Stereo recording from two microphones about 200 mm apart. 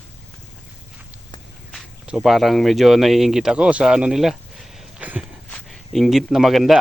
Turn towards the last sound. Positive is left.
turn(degrees=0)  # may be behind; listen again after turning